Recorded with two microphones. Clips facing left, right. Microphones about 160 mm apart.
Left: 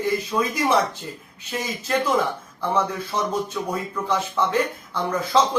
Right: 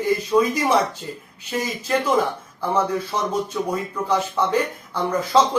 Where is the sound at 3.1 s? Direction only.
10° right (ahead or behind).